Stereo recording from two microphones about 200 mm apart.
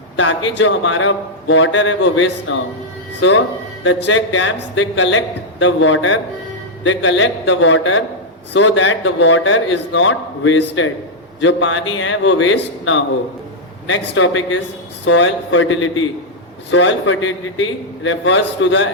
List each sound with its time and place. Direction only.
0.2 s a man's voice: 70° left (ahead or behind)